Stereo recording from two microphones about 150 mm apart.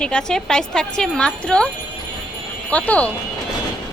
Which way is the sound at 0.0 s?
5° left (ahead or behind).